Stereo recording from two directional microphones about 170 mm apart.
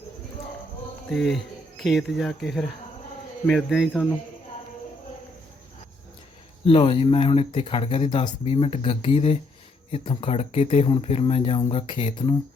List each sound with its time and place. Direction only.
1.1 s speech: centre (ahead or behind)
6.7 s speech: 30° left (ahead or behind)